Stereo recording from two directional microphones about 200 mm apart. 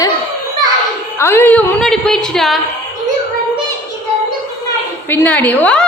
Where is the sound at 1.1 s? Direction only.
10° left (ahead or behind).